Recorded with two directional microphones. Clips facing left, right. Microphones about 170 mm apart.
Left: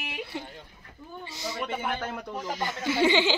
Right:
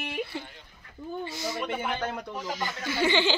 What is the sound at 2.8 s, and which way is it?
Speech, 25° left (ahead or behind).